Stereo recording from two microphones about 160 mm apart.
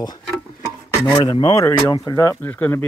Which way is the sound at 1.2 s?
25° left (ahead or behind).